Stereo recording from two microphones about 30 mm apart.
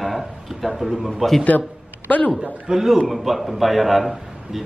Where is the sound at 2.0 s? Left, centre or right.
Left.